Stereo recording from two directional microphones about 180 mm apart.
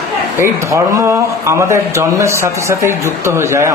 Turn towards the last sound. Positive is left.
turn(degrees=-15)  # may be behind; listen again after turning